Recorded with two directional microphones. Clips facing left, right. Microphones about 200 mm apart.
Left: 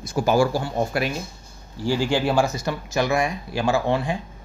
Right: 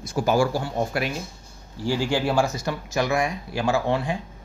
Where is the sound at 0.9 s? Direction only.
35° left (ahead or behind).